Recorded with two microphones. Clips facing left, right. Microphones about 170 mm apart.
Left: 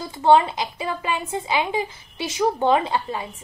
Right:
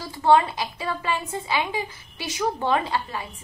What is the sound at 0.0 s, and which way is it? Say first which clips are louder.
A woman's voice: left 2 dB; 20° left (ahead or behind).